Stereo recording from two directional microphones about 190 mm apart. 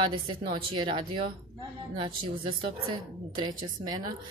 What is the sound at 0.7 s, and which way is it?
Speech, 25° right (ahead or behind).